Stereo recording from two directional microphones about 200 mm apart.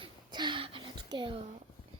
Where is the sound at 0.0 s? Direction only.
20° right (ahead or behind).